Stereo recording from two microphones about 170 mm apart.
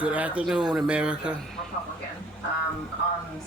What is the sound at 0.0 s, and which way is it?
Speech, 10° right (ahead or behind).